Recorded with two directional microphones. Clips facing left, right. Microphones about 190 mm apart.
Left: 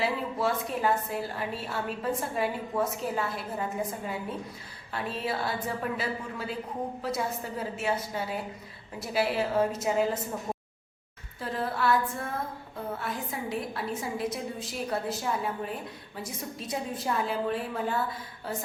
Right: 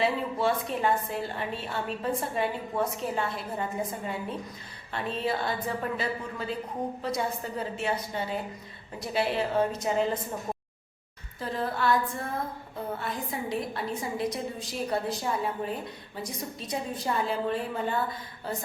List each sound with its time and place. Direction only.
0.0 s a woman's voice: centre (ahead or behind)
11.3 s a woman's voice: 5° left (ahead or behind)
13.0 s a woman's voice: centre (ahead or behind)